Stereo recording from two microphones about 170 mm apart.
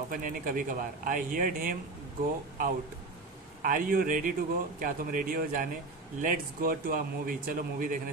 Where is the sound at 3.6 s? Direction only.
55° right (ahead or behind).